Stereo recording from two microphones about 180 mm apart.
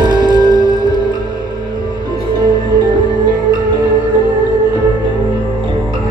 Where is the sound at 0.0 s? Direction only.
25° right (ahead or behind).